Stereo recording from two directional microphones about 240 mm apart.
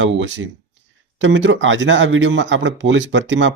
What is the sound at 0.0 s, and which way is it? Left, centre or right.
Speech, right.